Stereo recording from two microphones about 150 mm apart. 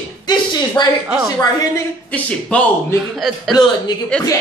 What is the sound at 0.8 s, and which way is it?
Speech, 30° left (ahead or behind).